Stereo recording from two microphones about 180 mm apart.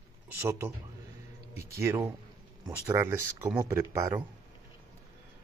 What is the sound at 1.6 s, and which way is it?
Speech, 15° right (ahead or behind).